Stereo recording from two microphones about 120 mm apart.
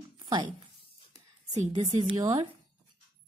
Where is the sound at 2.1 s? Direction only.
35° right (ahead or behind).